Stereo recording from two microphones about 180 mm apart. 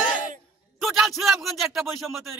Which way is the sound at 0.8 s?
Centre (ahead or behind).